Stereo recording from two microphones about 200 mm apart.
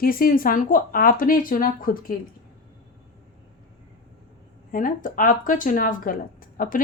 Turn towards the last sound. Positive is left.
turn(degrees=45)  # may be behind; listen again after turning